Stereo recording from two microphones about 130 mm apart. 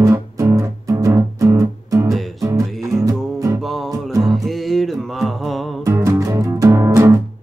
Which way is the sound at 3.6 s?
Centre (ahead or behind).